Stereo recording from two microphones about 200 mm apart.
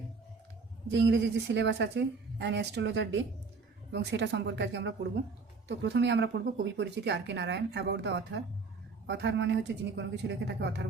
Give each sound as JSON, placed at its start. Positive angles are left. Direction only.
{"t": 0.9, "sound": "a woman's voice", "side_deg": -65}